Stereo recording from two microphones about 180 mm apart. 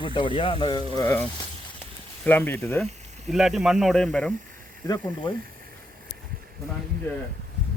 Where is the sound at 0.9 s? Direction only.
15° left (ahead or behind).